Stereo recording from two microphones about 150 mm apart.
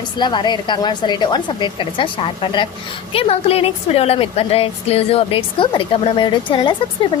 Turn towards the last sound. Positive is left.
turn(degrees=35)  # may be behind; listen again after turning